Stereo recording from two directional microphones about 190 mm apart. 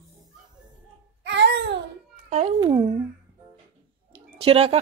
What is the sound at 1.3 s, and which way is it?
Babbling, 60° right (ahead or behind).